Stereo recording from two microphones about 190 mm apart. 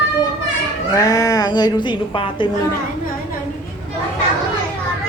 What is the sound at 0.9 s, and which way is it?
Speech, 15° left (ahead or behind).